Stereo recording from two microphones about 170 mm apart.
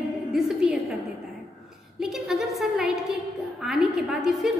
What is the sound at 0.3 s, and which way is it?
Speech, centre (ahead or behind).